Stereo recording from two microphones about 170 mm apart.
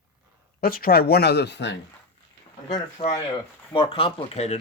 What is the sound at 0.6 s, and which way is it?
Speech, 60° left (ahead or behind).